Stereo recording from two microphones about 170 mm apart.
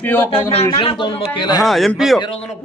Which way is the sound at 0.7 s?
30° left (ahead or behind).